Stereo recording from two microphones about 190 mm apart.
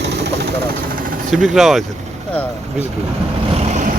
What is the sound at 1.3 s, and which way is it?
Speech, centre (ahead or behind).